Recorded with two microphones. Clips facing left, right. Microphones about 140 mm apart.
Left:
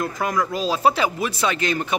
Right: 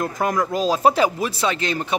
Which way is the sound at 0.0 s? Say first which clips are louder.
Right 2 dB; 45° right (ahead or behind).